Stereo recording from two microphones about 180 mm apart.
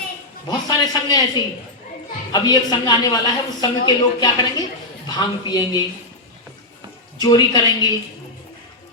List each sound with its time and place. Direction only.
0.4 s speech: 20° left (ahead or behind)
2.3 s speech: 20° left (ahead or behind)
7.2 s speech: 25° left (ahead or behind)